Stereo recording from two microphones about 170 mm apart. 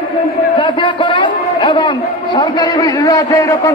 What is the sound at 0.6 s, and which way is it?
A man's voice, 30° left (ahead or behind).